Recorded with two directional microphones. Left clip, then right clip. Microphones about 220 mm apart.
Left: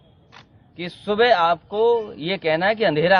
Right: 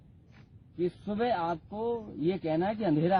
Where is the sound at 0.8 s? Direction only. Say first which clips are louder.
Left 12 dB; 5° left (ahead or behind).